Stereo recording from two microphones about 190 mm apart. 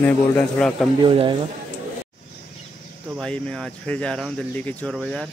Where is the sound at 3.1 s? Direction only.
5° left (ahead or behind).